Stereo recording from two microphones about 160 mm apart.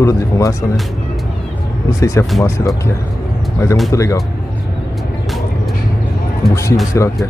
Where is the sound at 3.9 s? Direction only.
20° left (ahead or behind).